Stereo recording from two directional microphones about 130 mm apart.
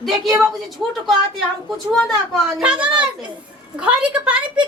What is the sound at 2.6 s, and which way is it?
Speech, 10° right (ahead or behind).